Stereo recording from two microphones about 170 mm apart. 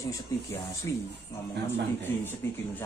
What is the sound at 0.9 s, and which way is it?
Speech, 20° left (ahead or behind).